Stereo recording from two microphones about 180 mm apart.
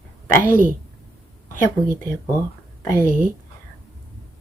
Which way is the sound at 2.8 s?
15° left (ahead or behind).